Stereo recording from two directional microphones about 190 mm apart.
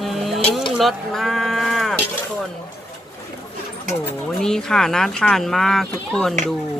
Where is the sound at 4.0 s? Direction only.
5° left (ahead or behind).